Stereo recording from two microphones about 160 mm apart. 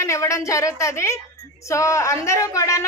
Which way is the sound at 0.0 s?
15° left (ahead or behind).